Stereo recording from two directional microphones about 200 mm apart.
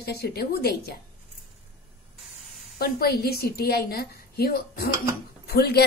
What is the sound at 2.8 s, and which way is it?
A woman's voice, 50° left (ahead or behind).